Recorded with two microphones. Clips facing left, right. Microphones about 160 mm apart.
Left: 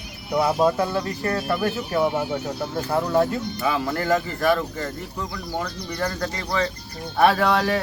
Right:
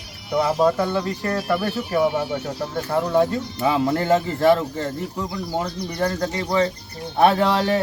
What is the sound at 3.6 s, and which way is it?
Speech, 25° right (ahead or behind).